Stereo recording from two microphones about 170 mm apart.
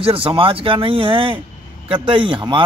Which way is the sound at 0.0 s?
30° right (ahead or behind).